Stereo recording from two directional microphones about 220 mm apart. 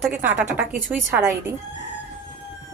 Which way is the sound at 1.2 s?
10° right (ahead or behind).